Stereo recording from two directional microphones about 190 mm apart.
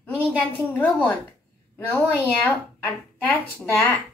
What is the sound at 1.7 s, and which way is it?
Speech, 10° left (ahead or behind).